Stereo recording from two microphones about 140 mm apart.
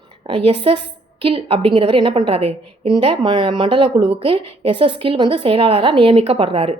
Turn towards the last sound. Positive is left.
turn(degrees=-45)  # may be behind; listen again after turning